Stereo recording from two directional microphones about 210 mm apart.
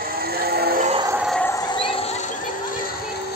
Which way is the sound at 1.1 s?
5° right (ahead or behind).